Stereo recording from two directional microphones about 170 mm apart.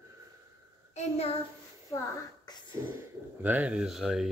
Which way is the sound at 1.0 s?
40° left (ahead or behind).